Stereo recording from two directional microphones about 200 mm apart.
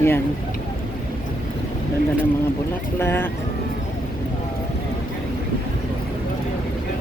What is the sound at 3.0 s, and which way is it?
Speech, 10° left (ahead or behind).